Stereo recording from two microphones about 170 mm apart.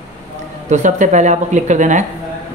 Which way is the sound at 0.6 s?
45° right (ahead or behind).